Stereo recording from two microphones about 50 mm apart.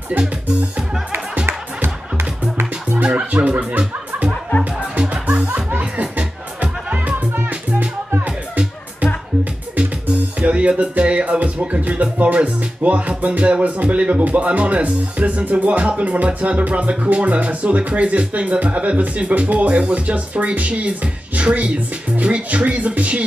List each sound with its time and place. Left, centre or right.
1.3 s music: right
3.0 s speech: right
5.1 s music: right
8.3 s music: centre
10.4 s music: right